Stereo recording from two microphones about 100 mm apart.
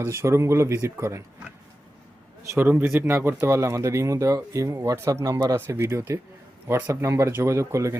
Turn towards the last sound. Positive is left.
turn(degrees=-30)  # may be behind; listen again after turning